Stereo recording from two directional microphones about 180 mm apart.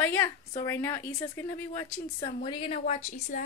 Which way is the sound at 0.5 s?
15° left (ahead or behind).